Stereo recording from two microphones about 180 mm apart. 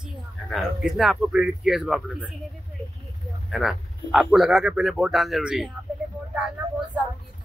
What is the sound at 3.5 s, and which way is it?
A man's voice, centre (ahead or behind).